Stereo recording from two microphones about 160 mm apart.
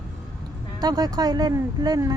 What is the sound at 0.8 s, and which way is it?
Speech, 25° right (ahead or behind).